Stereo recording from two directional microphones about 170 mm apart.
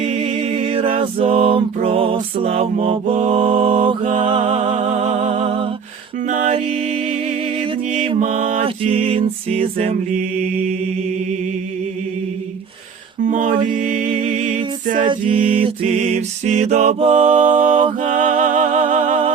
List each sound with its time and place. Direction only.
0.0 s a capella: 40° right (ahead or behind)
2.1 s mantra: 35° right (ahead or behind)
6.2 s music: 45° right (ahead or behind)
8.6 s mantra: 35° right (ahead or behind)
13.2 s mantra: 50° right (ahead or behind)
13.7 s mantra: 35° right (ahead or behind)
13.9 s music: 45° right (ahead or behind)
14.9 s music: 30° right (ahead or behind)